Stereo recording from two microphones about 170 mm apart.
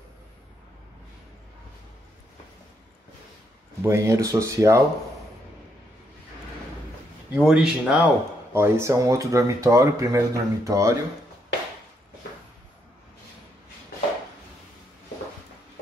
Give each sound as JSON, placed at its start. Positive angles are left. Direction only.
{"t": 3.8, "sound": "speech", "side_deg": -15}
{"t": 7.3, "sound": "speech", "side_deg": 0}
{"t": 8.5, "sound": "speech", "side_deg": -15}